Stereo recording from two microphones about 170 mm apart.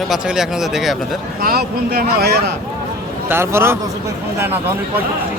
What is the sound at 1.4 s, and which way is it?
Speech, 65° right (ahead or behind).